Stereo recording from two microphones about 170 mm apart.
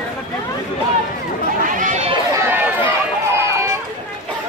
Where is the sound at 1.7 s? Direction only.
50° right (ahead or behind).